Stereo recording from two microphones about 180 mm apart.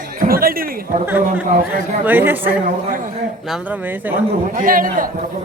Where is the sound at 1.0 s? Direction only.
10° right (ahead or behind).